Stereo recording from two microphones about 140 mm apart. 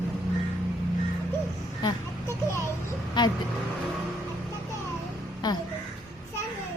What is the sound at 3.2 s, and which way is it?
Speech, 30° left (ahead or behind).